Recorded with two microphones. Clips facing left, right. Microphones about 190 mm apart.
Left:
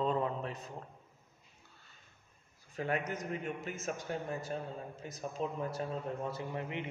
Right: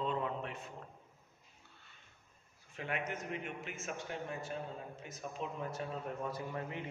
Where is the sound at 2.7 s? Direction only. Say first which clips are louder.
Left 4 dB; 40° left (ahead or behind); by 6.9 s 20° left (ahead or behind).